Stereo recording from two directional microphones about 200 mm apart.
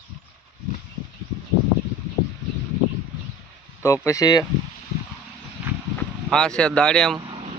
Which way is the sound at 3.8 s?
15° left (ahead or behind).